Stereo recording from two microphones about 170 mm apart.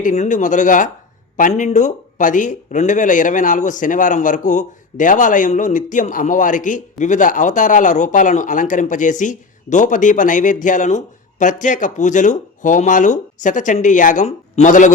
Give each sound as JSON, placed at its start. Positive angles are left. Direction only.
{"t": 0.0, "sound": "speech", "side_deg": 45}